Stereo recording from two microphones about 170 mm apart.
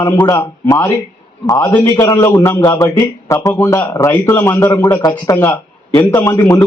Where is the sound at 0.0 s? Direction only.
20° left (ahead or behind).